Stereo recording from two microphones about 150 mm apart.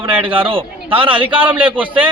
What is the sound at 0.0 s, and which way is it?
A man's voice, 35° right (ahead or behind).